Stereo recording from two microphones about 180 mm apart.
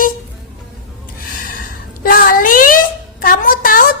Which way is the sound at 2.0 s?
55° left (ahead or behind).